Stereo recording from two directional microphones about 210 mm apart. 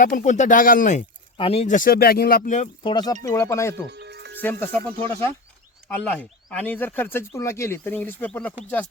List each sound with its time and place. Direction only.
0.0 s speech: 40° left (ahead or behind)
2.8 s speech: 20° left (ahead or behind)
3.8 s music: 55° right (ahead or behind)
4.4 s speech: 10° left (ahead or behind)
5.9 s speech: 5° left (ahead or behind)